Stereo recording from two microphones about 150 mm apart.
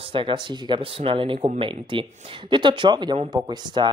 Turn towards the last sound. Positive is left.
turn(degrees=-30)  # may be behind; listen again after turning